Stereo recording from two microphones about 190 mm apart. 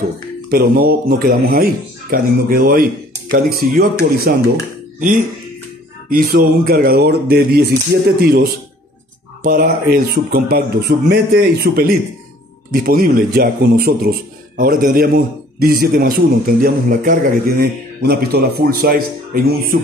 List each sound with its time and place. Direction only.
0.5 s a man's voice: 50° right (ahead or behind)
6.0 s a man's voice: 50° right (ahead or behind)